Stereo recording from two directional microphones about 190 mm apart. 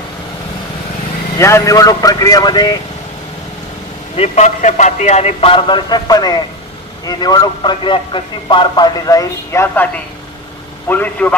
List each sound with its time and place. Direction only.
1.4 s a man's voice: 15° left (ahead or behind)
4.2 s a man's voice: 40° left (ahead or behind); by 9.8 s 15° left (ahead or behind)
10.9 s a man's voice: 10° left (ahead or behind)